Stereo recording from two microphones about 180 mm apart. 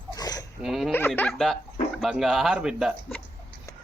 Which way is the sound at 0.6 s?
Centre (ahead or behind).